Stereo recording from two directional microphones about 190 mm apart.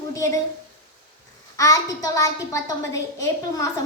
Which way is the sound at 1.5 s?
15° left (ahead or behind).